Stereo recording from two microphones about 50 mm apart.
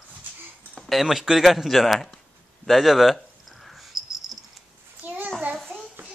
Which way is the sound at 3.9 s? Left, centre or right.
Centre.